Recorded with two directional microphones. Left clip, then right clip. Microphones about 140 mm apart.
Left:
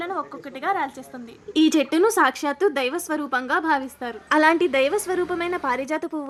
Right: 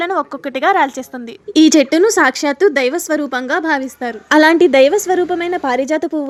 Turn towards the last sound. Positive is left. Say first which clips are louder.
# right 9 dB
turn(degrees=-15)  # may be behind; listen again after turning